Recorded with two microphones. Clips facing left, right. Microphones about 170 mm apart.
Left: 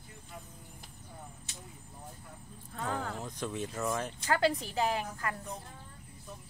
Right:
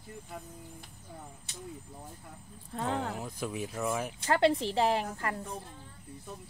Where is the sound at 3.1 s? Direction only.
5° right (ahead or behind).